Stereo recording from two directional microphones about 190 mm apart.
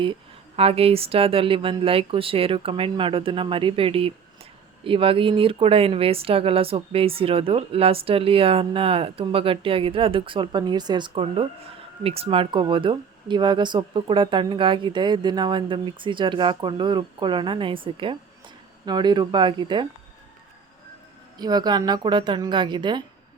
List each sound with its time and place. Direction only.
0.0 s speech: 30° right (ahead or behind)
21.3 s speech: 20° right (ahead or behind)